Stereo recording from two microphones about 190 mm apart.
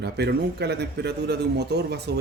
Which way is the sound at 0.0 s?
60° right (ahead or behind).